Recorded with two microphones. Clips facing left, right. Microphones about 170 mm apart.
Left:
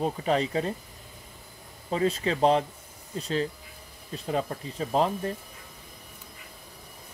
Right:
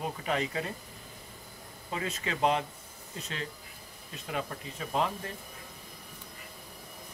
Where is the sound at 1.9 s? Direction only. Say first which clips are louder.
Left 9 dB; 30° left (ahead or behind).